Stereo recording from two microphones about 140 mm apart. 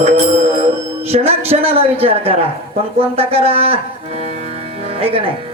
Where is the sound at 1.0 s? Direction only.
45° right (ahead or behind).